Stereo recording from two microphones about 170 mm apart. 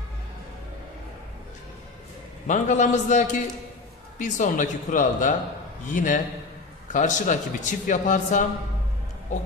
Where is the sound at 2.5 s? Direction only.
45° left (ahead or behind).